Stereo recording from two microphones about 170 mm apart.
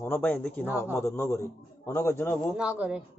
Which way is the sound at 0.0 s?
10° left (ahead or behind).